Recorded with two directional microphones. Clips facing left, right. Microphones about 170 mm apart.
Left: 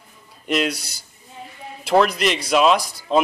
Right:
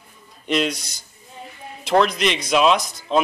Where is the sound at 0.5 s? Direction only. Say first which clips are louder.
Even; 5° left (ahead or behind).